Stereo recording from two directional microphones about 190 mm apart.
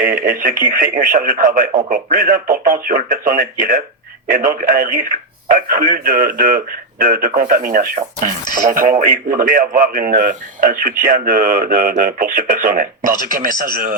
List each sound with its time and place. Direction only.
0.0 s speech: 50° right (ahead or behind)